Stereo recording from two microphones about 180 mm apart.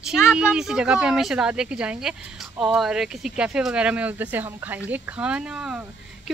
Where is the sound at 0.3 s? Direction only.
5° right (ahead or behind).